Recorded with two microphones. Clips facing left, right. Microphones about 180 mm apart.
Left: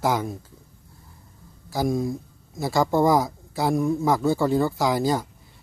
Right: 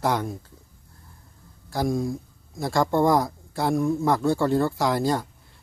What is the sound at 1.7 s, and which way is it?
Speech, centre (ahead or behind).